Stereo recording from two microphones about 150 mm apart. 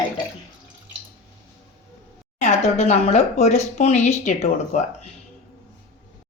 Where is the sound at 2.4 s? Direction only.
45° left (ahead or behind).